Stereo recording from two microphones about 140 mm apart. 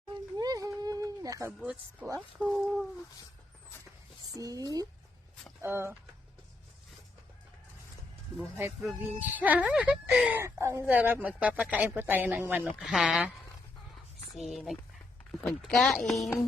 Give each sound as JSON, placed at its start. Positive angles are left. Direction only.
{"t": 0.1, "sound": "a sound", "side_deg": -30}
{"t": 1.5, "sound": "speech", "side_deg": -5}
{"t": 4.4, "sound": "speech", "side_deg": -25}
{"t": 8.5, "sound": "speech", "side_deg": -15}
{"t": 13.9, "sound": "a sound", "side_deg": 0}
{"t": 15.3, "sound": "speech", "side_deg": 5}